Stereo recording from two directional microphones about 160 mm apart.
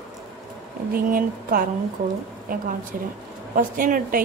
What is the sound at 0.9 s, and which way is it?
Speech, 65° right (ahead or behind).